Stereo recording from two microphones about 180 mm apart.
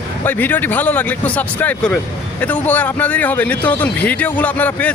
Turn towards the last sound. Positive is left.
turn(degrees=10)  # may be behind; listen again after turning